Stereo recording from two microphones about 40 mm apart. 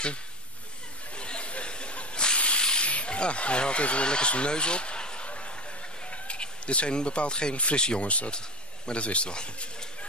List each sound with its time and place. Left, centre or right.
1.1 s hiss: left
2.6 s rub: left
2.9 s speech: left